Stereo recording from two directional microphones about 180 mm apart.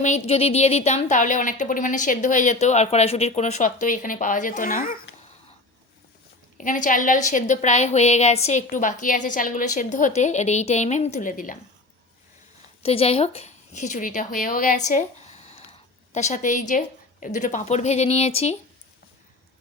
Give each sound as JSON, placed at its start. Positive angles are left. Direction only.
{"t": 0.0, "sound": "a woman's voice", "side_deg": 35}
{"t": 6.6, "sound": "a woman's voice", "side_deg": 45}
{"t": 12.8, "sound": "a woman's voice", "side_deg": 35}